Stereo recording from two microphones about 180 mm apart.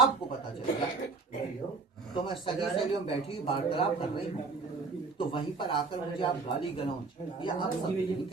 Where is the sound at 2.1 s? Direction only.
30° left (ahead or behind).